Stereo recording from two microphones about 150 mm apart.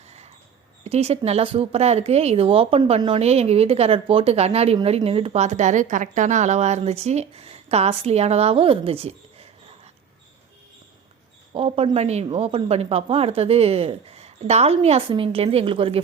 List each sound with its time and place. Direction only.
0.9 s speech: 45° right (ahead or behind)
11.5 s a woman's voice: 40° right (ahead or behind)